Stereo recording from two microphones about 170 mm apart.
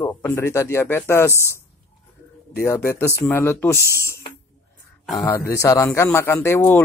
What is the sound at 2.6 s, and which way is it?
Speech, 15° left (ahead or behind).